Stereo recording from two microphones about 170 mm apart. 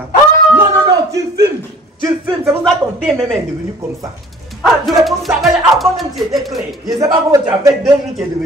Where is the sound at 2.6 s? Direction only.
Centre (ahead or behind).